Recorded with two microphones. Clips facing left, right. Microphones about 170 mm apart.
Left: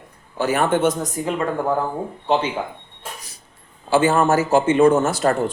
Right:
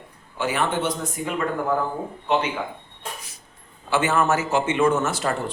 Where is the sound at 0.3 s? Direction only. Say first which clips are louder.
Left 5 dB; 45° left (ahead or behind).